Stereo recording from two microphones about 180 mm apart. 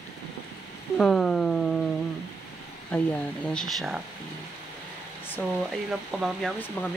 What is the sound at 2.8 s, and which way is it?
Speech, 10° left (ahead or behind).